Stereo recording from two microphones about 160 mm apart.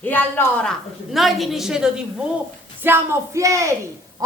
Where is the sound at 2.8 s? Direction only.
15° right (ahead or behind).